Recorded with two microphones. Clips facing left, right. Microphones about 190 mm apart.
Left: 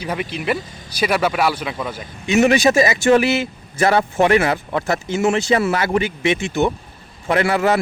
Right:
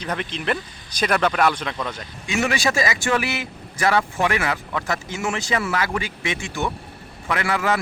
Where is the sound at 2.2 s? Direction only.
20° left (ahead or behind).